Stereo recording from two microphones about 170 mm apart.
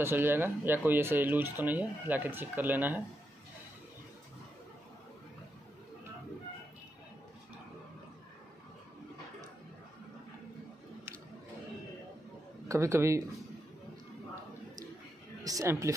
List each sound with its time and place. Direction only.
0.0 s speech: 15° right (ahead or behind)
12.6 s a man's voice: 15° right (ahead or behind)
15.4 s speech: 20° right (ahead or behind)